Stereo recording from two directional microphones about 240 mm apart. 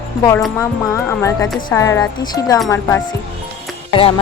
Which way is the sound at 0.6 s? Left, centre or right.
Centre.